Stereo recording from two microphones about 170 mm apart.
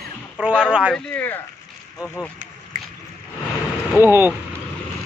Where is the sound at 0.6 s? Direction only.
5° right (ahead or behind).